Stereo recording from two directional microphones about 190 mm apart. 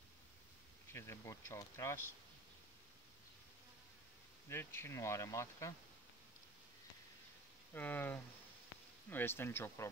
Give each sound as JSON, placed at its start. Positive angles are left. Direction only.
{"t": 0.9, "sound": "speech", "side_deg": 15}
{"t": 4.5, "sound": "speech", "side_deg": 10}
{"t": 7.7, "sound": "speech", "side_deg": 10}